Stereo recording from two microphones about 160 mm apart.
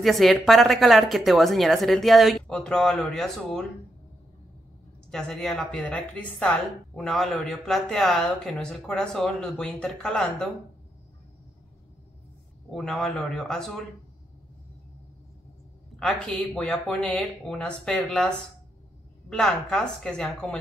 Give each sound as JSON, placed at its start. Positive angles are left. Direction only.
{"t": 0.0, "sound": "a woman's voice", "side_deg": 0}
{"t": 5.1, "sound": "a woman's voice", "side_deg": 5}
{"t": 12.7, "sound": "a woman's voice", "side_deg": 0}
{"t": 16.0, "sound": "a woman's voice", "side_deg": 5}